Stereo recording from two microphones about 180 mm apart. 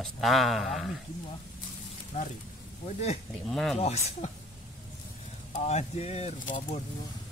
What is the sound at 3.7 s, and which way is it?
Speech, 35° left (ahead or behind).